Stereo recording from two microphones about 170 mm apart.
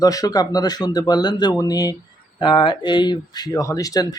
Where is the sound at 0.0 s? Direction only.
20° left (ahead or behind).